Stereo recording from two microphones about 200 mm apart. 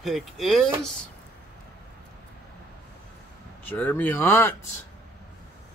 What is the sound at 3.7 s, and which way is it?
Speech, 10° left (ahead or behind).